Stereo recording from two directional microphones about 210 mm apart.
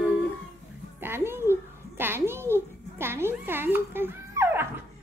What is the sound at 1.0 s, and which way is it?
A child's voice, 10° right (ahead or behind).